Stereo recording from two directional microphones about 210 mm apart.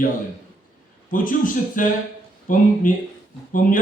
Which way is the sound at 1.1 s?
40° left (ahead or behind).